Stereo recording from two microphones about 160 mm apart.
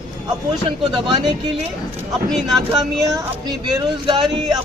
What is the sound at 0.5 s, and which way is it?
Speech, 30° right (ahead or behind).